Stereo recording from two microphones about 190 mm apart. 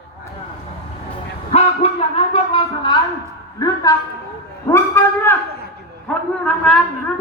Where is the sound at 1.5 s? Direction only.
35° left (ahead or behind); by 6.8 s 5° left (ahead or behind).